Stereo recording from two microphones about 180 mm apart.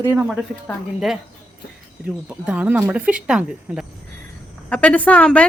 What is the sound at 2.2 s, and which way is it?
Speech, 5° right (ahead or behind).